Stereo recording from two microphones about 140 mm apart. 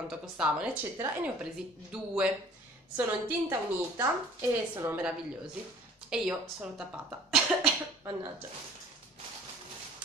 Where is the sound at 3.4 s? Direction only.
20° right (ahead or behind).